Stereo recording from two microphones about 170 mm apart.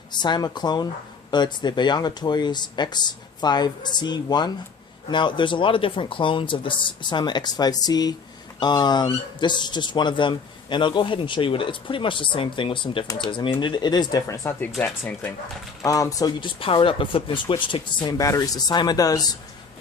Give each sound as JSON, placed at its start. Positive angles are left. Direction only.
{"t": 0.1, "sound": "speech", "side_deg": 25}
{"t": 15.8, "sound": "speech", "side_deg": 20}